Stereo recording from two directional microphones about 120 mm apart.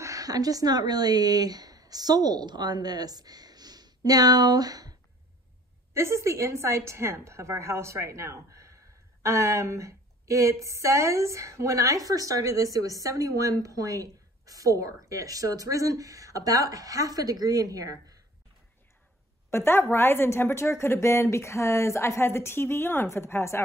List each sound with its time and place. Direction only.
0.0 s speech: 30° right (ahead or behind)
5.9 s a woman's voice: 25° right (ahead or behind)
19.5 s a woman's voice: 20° left (ahead or behind)